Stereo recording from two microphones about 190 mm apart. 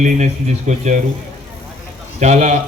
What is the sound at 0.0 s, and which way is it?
A man's voice, 40° right (ahead or behind).